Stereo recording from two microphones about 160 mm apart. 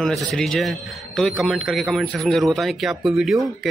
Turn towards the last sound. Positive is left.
turn(degrees=0)  # may be behind; listen again after turning